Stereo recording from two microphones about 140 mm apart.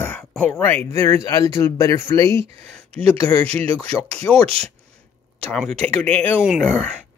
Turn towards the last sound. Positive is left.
turn(degrees=10)  # may be behind; listen again after turning